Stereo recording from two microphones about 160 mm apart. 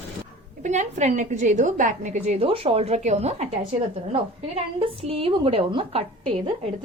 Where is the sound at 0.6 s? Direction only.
50° right (ahead or behind).